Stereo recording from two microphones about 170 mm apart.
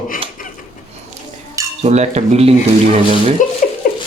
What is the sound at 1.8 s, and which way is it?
Speech, 40° right (ahead or behind).